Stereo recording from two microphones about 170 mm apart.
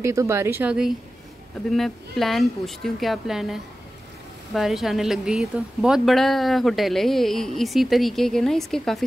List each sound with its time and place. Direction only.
0.0 s a woman's voice: 15° right (ahead or behind); by 9.0 s centre (ahead or behind)